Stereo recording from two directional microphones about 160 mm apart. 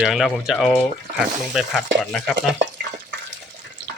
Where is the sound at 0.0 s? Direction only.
Centre (ahead or behind).